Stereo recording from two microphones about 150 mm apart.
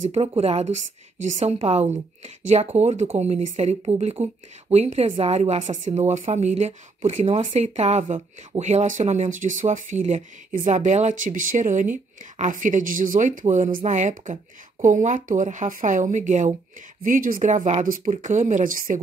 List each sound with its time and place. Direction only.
0.0 s a woman's voice: 45° right (ahead or behind)
17.0 s speech: 65° right (ahead or behind)